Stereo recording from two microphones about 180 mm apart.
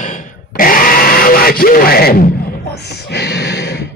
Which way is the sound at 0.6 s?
55° left (ahead or behind).